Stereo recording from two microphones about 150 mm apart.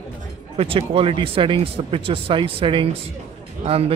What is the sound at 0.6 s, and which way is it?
A man's voice, 40° right (ahead or behind).